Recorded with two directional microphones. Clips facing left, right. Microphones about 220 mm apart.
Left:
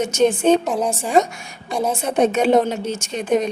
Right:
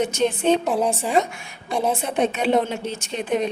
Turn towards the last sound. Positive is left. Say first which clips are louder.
# left 4 dB
turn(degrees=45)  # may be behind; listen again after turning